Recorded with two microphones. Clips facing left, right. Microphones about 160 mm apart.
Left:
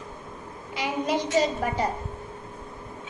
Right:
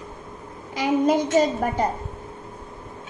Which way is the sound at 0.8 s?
45° right (ahead or behind).